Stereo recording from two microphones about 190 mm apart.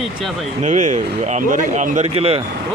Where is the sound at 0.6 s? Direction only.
40° right (ahead or behind).